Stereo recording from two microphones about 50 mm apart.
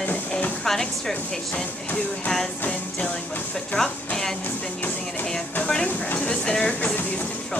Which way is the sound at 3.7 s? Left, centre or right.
Centre.